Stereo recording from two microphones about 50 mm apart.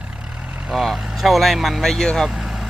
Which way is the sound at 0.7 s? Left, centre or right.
Centre.